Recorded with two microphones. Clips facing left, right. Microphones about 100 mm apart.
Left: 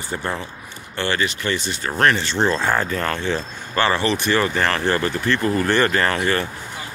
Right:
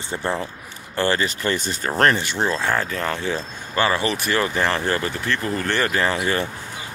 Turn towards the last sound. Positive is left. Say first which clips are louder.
# left 1 dB
turn(degrees=-10)  # may be behind; listen again after turning